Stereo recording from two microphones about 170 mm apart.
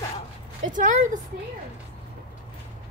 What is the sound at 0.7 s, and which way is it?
Speech, 50° right (ahead or behind).